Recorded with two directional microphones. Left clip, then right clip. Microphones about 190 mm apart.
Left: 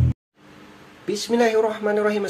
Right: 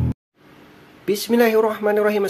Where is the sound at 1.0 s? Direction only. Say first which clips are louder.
Right 3 dB; 35° right (ahead or behind).